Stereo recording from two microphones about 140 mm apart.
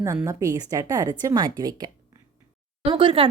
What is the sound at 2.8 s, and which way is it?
Speech, 40° right (ahead or behind).